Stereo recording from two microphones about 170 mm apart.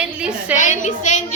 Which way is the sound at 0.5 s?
45° left (ahead or behind).